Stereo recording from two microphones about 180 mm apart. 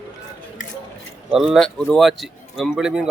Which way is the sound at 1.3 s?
5° right (ahead or behind).